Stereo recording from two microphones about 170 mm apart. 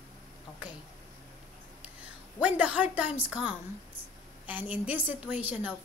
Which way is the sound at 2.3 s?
10° right (ahead or behind).